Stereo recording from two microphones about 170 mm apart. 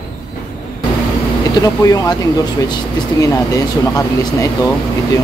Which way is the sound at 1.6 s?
20° left (ahead or behind).